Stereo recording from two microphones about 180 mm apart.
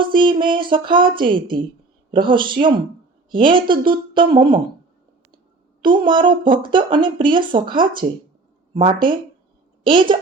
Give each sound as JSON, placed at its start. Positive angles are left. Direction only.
{"t": 0.0, "sound": "speech", "side_deg": -25}
{"t": 5.8, "sound": "speech", "side_deg": -25}